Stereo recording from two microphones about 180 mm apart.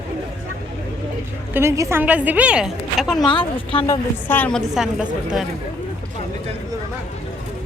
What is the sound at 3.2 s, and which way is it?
Speech, 25° left (ahead or behind).